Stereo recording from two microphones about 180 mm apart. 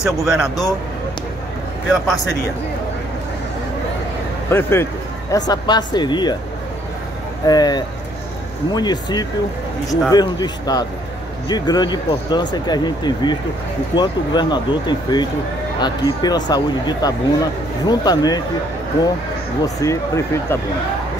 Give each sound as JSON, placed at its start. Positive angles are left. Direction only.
{"t": 0.0, "sound": "speech", "side_deg": 0}
{"t": 4.5, "sound": "speech", "side_deg": 15}
{"t": 5.5, "sound": "speech", "side_deg": 25}
{"t": 7.4, "sound": "speech", "side_deg": 20}
{"t": 19.6, "sound": "speech", "side_deg": 15}